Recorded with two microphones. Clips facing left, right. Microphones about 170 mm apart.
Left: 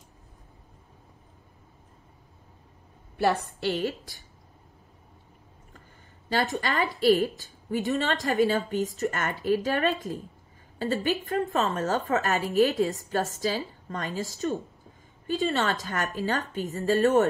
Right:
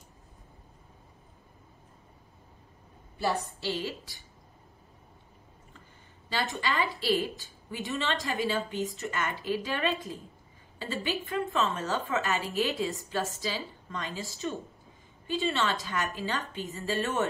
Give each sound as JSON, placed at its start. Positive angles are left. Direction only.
{"t": 3.6, "sound": "a woman's voice", "side_deg": 50}
{"t": 6.5, "sound": "a woman's voice", "side_deg": 40}